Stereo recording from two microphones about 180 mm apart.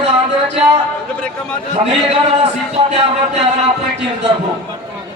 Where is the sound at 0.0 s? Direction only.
35° right (ahead or behind).